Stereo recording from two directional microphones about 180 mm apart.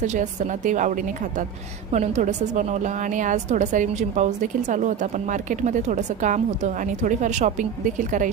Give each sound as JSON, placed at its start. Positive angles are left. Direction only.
{"t": 0.0, "sound": "a woman's voice", "side_deg": -40}